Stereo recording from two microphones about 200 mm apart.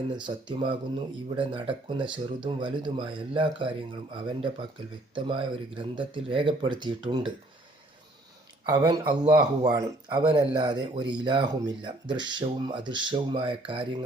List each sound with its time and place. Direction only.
0.4 s speech: 25° right (ahead or behind)
8.6 s speech: 20° right (ahead or behind)